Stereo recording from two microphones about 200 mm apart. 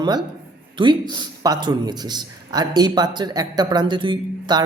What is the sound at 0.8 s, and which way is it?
Speech, 20° right (ahead or behind).